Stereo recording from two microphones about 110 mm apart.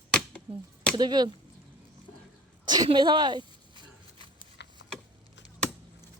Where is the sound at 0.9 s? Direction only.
40° right (ahead or behind).